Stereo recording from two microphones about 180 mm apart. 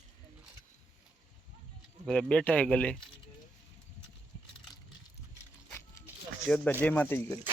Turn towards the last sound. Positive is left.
turn(degrees=10)  # may be behind; listen again after turning